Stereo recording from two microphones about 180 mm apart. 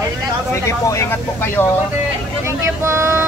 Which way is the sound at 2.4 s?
15° right (ahead or behind).